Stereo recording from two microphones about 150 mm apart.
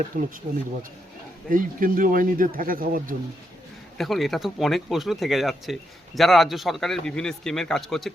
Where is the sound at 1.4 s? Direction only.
70° right (ahead or behind).